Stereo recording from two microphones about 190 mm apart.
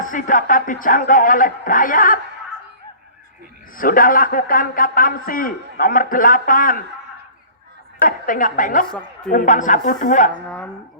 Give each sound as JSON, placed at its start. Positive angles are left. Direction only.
{"t": 0.0, "sound": "a man's voice", "side_deg": 45}
{"t": 3.8, "sound": "a man's voice", "side_deg": 50}
{"t": 8.0, "sound": "a man's voice", "side_deg": 45}